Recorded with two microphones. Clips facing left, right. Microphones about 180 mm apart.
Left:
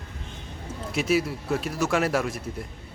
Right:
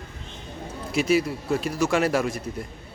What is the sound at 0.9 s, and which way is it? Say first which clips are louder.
A woman's voice: right 2 dB; centre (ahead or behind).